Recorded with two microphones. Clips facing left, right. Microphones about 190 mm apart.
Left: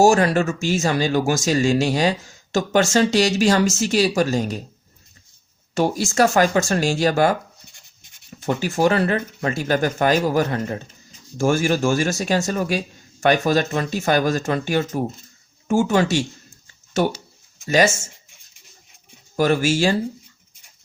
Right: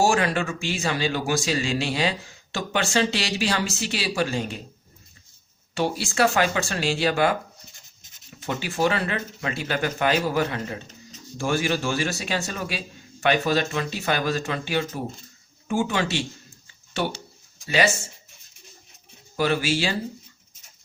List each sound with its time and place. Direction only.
0.0 s speech: 40° left (ahead or behind)
5.7 s speech: 45° left (ahead or behind)
8.4 s speech: 45° left (ahead or behind)
19.4 s speech: 45° left (ahead or behind)